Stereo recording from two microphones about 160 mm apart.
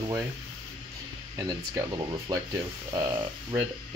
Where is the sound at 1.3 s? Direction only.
20° right (ahead or behind).